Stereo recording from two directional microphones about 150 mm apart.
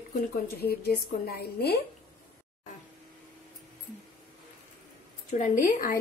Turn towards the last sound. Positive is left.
turn(degrees=65)  # may be behind; listen again after turning